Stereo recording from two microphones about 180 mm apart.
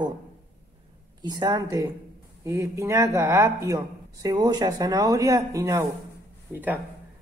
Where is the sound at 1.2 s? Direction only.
20° right (ahead or behind).